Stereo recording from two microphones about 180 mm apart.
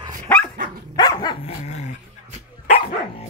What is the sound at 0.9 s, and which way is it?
Dog, 20° left (ahead or behind).